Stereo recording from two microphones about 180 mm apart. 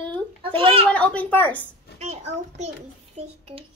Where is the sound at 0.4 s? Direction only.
30° right (ahead or behind).